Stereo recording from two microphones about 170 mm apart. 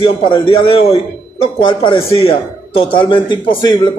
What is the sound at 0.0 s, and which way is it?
A man's voice, 30° left (ahead or behind).